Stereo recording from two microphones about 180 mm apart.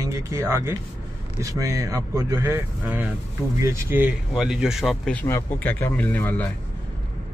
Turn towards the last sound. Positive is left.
turn(degrees=10)  # may be behind; listen again after turning